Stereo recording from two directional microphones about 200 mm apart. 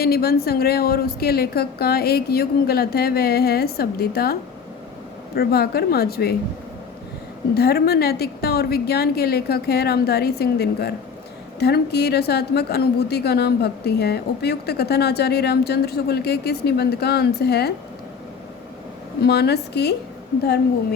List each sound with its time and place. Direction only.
0.0 s a woman's voice: 50° left (ahead or behind)
7.5 s a woman's voice: 50° left (ahead or behind)
19.2 s a woman's voice: 55° left (ahead or behind)